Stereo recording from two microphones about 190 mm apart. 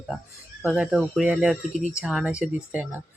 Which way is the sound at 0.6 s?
5° right (ahead or behind).